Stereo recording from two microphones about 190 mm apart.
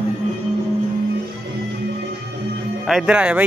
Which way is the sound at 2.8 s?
Centre (ahead or behind).